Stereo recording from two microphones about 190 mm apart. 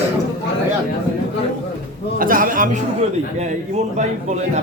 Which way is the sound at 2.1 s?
45° right (ahead or behind).